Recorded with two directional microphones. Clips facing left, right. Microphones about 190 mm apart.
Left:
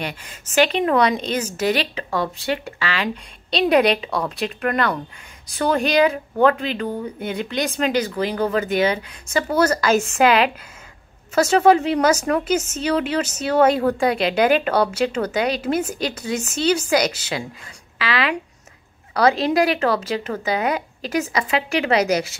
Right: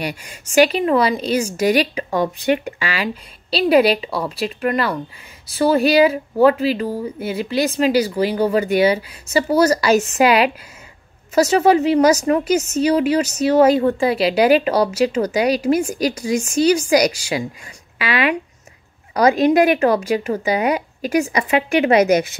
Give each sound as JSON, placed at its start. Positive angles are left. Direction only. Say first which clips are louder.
{"t": 0.0, "sound": "speech", "louder": "right 3 dB", "side_deg": -10}
{"t": 19.4, "sound": "speech", "louder": "right 5 dB", "side_deg": -20}